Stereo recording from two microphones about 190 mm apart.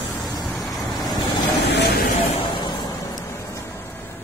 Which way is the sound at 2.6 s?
20° left (ahead or behind).